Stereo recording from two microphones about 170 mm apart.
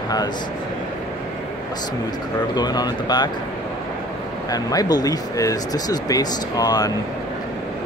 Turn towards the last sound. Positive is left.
turn(degrees=20)  # may be behind; listen again after turning